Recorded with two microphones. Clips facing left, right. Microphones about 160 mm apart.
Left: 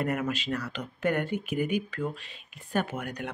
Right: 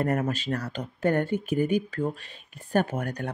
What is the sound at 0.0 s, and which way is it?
Speech, 40° right (ahead or behind).